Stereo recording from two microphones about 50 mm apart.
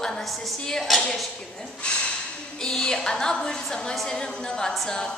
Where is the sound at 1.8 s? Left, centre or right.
Left.